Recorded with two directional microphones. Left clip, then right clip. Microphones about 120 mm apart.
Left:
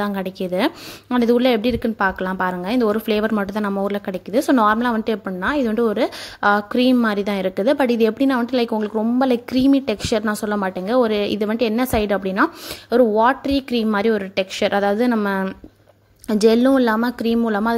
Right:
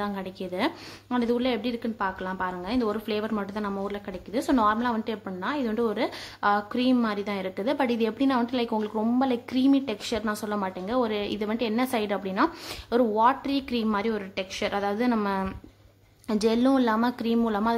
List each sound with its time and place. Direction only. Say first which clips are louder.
0.0 s a woman's voice: left 8 dB; 50° left (ahead or behind); by 9.0 s 30° left (ahead or behind)
9.2 s a woman's voice: left 9 dB; 40° left (ahead or behind)